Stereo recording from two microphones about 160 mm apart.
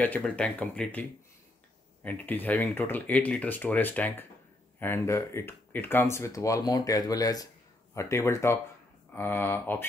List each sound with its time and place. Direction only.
0.0 s speech: 10° left (ahead or behind)
2.0 s speech: 10° left (ahead or behind)